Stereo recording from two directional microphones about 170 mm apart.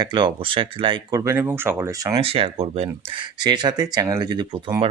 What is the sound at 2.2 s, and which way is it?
Speech, 35° right (ahead or behind).